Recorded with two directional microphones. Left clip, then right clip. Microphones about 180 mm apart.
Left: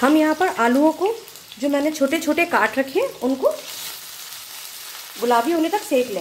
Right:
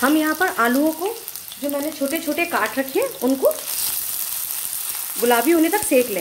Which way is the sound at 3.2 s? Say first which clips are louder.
Right 2 dB; 25° right (ahead or behind).